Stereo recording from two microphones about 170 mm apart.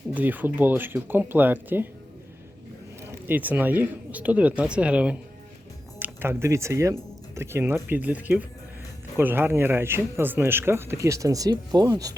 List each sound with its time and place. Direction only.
0.1 s speech: 10° right (ahead or behind)
3.1 s speech: 10° right (ahead or behind)